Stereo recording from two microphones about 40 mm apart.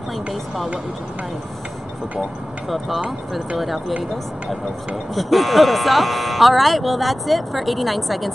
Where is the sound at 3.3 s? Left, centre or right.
Centre.